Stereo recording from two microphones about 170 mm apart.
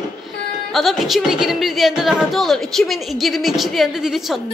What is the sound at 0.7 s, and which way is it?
A woman's voice, centre (ahead or behind).